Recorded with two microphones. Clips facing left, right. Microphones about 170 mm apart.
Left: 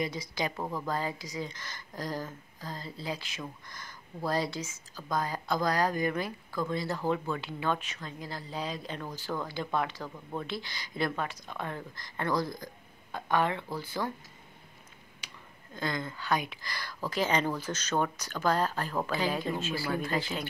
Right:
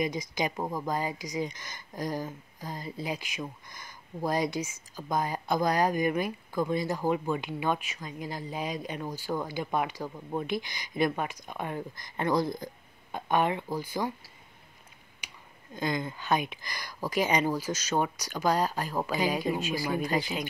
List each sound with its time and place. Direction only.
0.0 s speech: 15° right (ahead or behind)
15.1 s speech: 15° right (ahead or behind)